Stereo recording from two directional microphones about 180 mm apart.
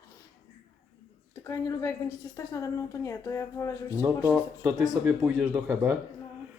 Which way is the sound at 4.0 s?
10° right (ahead or behind).